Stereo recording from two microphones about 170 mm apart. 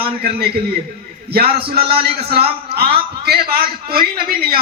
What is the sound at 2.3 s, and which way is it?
A man's voice, 65° right (ahead or behind).